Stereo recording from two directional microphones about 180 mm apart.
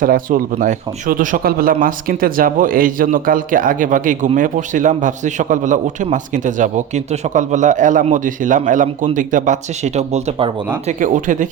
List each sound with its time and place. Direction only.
0.0 s a man's voice: 50° right (ahead or behind); by 10.5 s 35° right (ahead or behind)
10.8 s a man's voice: 45° right (ahead or behind)